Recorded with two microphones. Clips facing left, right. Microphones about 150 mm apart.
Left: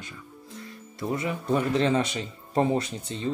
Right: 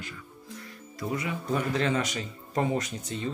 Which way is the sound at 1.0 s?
25° left (ahead or behind).